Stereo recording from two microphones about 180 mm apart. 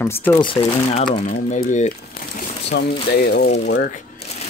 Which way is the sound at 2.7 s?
70° left (ahead or behind).